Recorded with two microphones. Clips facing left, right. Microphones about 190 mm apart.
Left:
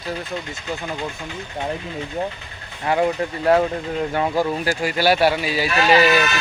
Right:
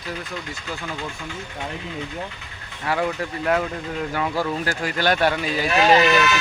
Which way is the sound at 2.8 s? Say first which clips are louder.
Left 4 dB; 25° left (ahead or behind).